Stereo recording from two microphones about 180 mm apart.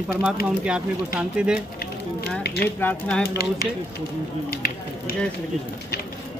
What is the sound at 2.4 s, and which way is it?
Speech, 65° left (ahead or behind).